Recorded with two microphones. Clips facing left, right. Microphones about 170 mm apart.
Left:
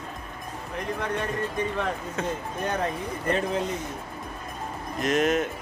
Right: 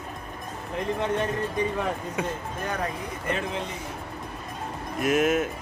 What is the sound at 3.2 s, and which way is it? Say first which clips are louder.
Speech: left 4 dB; 35° left (ahead or behind).